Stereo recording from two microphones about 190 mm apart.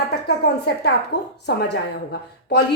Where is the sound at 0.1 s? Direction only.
60° left (ahead or behind).